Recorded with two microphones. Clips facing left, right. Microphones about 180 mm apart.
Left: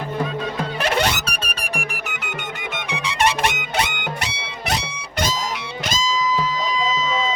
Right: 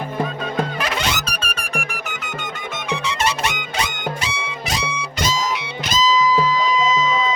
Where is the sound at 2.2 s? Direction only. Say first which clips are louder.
Even; 65° left (ahead or behind).